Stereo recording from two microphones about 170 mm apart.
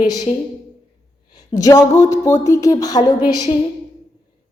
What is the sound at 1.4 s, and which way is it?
A woman's voice, 20° left (ahead or behind).